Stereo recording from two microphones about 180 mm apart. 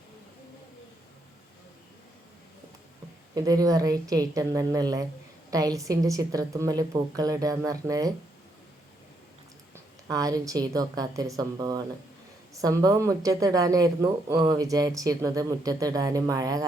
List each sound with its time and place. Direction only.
3.3 s speech: 20° right (ahead or behind)
10.1 s speech: 20° right (ahead or behind)